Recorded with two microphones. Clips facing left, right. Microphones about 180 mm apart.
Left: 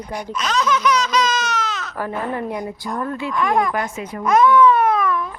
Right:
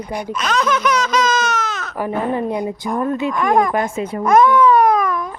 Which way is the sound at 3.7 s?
25° right (ahead or behind).